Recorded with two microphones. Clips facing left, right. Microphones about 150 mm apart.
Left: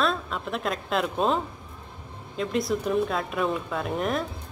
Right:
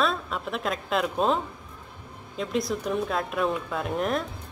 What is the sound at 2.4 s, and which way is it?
A woman's voice, centre (ahead or behind).